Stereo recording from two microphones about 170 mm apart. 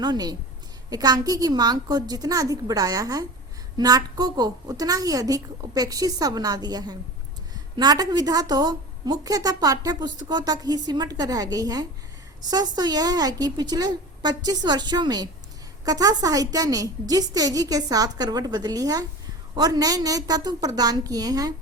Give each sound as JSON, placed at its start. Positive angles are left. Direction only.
{"t": 0.0, "sound": "a woman's voice", "side_deg": -25}